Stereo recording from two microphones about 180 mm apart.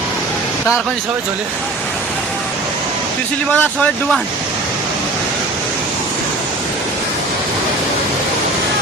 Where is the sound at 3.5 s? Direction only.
5° left (ahead or behind).